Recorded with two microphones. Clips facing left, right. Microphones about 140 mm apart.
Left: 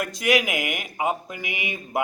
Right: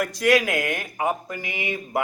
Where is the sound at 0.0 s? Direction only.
20° left (ahead or behind).